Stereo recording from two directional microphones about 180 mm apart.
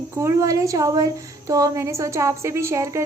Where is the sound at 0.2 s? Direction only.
15° right (ahead or behind).